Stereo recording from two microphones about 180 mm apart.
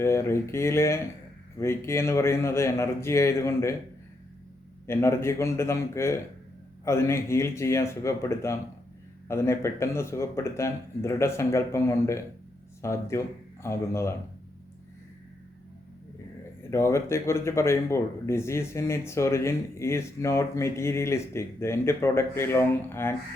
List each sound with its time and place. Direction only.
0.0 s speech: 15° left (ahead or behind)
4.9 s speech: 15° left (ahead or behind)
16.7 s speech: 15° left (ahead or behind)